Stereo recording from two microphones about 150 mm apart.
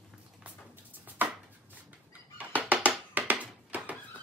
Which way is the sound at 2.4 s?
10° right (ahead or behind).